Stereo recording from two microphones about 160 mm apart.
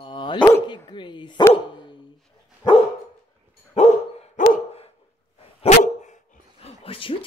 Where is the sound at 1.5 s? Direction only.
30° left (ahead or behind).